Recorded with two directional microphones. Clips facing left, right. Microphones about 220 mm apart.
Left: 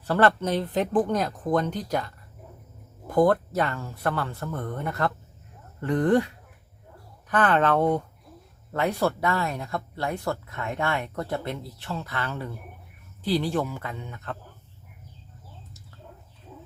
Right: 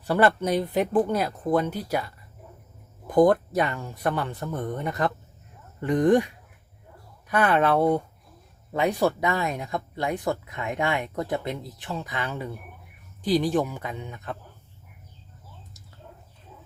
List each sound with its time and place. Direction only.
0.0 s speech: 10° right (ahead or behind)
3.1 s speech: 15° right (ahead or behind)